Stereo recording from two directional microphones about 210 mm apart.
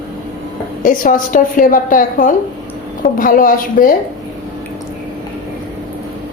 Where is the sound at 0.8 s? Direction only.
40° left (ahead or behind).